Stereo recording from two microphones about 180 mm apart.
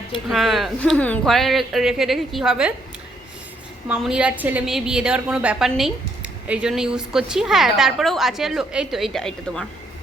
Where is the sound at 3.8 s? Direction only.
5° right (ahead or behind).